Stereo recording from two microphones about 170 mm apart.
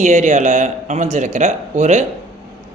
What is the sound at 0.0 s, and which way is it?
Speech, 45° right (ahead or behind).